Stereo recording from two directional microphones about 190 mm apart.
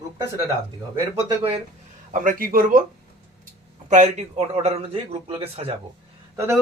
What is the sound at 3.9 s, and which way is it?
A man's voice, 40° right (ahead or behind).